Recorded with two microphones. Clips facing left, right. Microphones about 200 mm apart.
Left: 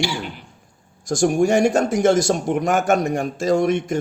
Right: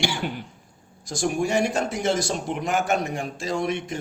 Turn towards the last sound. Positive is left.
turn(degrees=45)  # may be behind; listen again after turning